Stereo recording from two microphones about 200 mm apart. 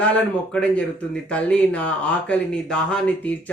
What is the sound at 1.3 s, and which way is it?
Speech, 5° left (ahead or behind).